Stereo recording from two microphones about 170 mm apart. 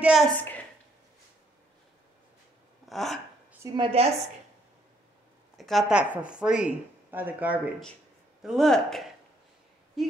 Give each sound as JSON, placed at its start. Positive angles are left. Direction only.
{"t": 0.0, "sound": "speech", "side_deg": -5}
{"t": 0.4, "sound": "a sound", "side_deg": 10}
{"t": 2.9, "sound": "speech", "side_deg": 0}
{"t": 3.7, "sound": "a woman's voice", "side_deg": -35}
{"t": 5.6, "sound": "speech", "side_deg": 0}